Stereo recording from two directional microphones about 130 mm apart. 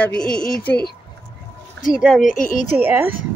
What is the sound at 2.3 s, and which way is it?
Speech, 90° left.